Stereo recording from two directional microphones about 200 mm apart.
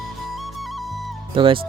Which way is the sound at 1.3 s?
25° right (ahead or behind).